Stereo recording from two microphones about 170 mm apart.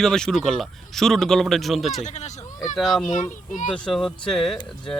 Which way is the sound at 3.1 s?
50° left (ahead or behind).